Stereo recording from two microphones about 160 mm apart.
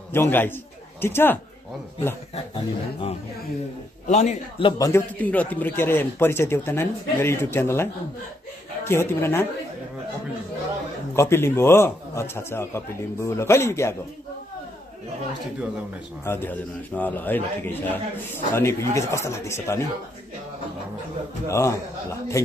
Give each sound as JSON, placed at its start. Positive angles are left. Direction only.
{"t": 0.1, "sound": "a man's voice", "side_deg": 15}
{"t": 2.5, "sound": "speech", "side_deg": 35}
{"t": 4.1, "sound": "a man's voice", "side_deg": 45}
{"t": 4.6, "sound": "a man's voice", "side_deg": 20}
{"t": 5.2, "sound": "a man's voice", "side_deg": 10}
{"t": 11.1, "sound": "a man's voice", "side_deg": 15}
{"t": 16.3, "sound": "a man's voice", "side_deg": 10}
{"t": 21.5, "sound": "a man's voice", "side_deg": 20}